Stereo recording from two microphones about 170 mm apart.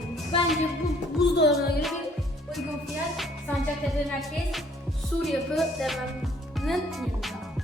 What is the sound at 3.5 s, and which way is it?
Music, 10° left (ahead or behind).